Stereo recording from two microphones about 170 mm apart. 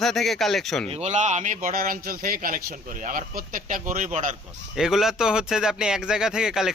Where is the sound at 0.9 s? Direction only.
40° right (ahead or behind).